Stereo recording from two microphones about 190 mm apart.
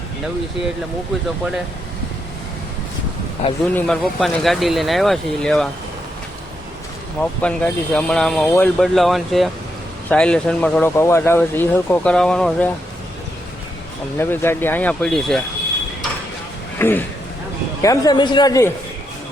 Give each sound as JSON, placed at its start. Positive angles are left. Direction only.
{"t": 3.4, "sound": "speech", "side_deg": 30}
{"t": 3.8, "sound": "speech", "side_deg": 0}
{"t": 7.2, "sound": "speech", "side_deg": 5}
{"t": 14.2, "sound": "speech", "side_deg": 10}
{"t": 16.7, "sound": "a sound", "side_deg": 10}
{"t": 17.8, "sound": "speech", "side_deg": 20}